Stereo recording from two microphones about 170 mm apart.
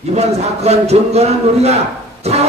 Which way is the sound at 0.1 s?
40° right (ahead or behind).